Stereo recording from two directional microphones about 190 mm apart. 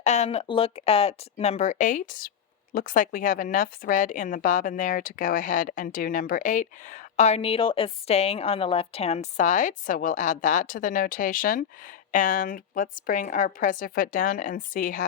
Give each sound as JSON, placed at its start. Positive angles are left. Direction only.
{"t": 0.0, "sound": "a woman's voice", "side_deg": 35}